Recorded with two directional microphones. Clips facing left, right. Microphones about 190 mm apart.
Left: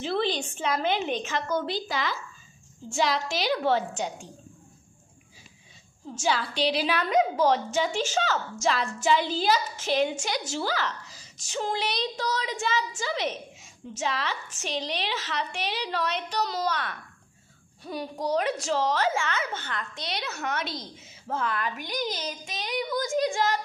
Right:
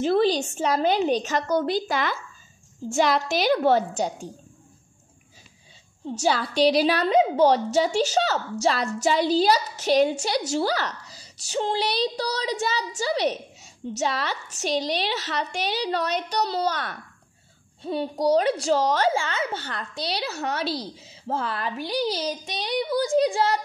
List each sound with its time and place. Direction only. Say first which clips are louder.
0.0 s a woman's voice: right 7 dB; 40° right (ahead or behind)
6.0 s a woman's voice: right 4 dB; 40° right (ahead or behind)
17.8 s a woman's voice: right 7 dB; 30° right (ahead or behind)